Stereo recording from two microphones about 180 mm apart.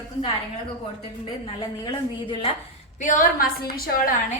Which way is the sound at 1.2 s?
25° left (ahead or behind).